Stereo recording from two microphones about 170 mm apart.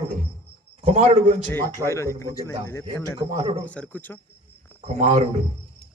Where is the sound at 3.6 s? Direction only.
10° left (ahead or behind).